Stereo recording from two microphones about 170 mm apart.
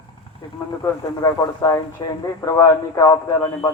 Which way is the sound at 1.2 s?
20° left (ahead or behind).